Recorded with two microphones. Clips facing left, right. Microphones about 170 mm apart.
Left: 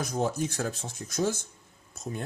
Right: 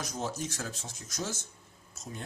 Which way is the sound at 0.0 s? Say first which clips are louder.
Left 7 dB; 55° left (ahead or behind).